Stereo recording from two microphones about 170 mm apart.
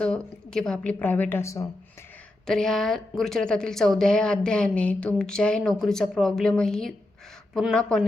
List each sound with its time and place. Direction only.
0.0 s a woman's voice: 5° left (ahead or behind)
2.5 s a woman's voice: 5° left (ahead or behind)